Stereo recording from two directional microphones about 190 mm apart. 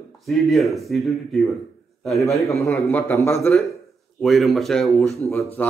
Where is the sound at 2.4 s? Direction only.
15° left (ahead or behind).